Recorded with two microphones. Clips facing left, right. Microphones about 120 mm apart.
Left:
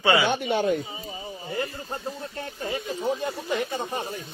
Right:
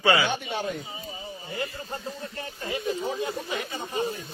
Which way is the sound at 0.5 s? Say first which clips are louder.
Left 7 dB; 50° left (ahead or behind).